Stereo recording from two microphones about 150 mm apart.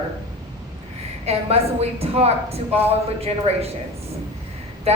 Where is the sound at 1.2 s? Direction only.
45° right (ahead or behind).